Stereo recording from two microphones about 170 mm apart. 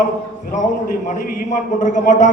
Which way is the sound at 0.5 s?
45° left (ahead or behind).